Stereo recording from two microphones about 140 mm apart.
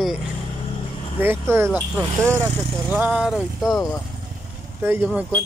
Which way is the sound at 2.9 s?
10° right (ahead or behind).